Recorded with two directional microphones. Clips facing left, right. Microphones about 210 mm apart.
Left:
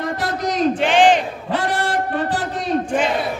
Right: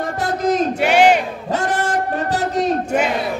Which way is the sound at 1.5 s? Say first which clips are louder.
Right 1 dB; 45° right (ahead or behind).